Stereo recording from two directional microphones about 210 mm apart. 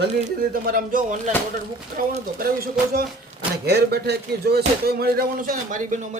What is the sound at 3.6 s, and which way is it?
Speech, 50° right (ahead or behind).